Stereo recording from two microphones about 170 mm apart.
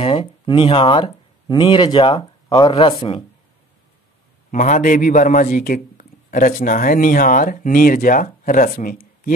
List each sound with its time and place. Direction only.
0.0 s speech: 30° left (ahead or behind)
4.5 s a man's voice: 45° left (ahead or behind)